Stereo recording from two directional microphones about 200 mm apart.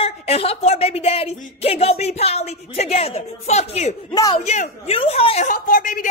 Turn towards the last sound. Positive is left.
turn(degrees=40)  # may be behind; listen again after turning